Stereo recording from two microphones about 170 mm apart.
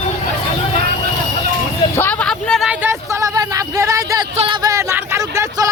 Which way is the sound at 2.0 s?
10° left (ahead or behind).